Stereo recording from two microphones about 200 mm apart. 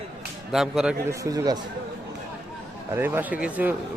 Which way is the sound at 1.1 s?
15° right (ahead or behind).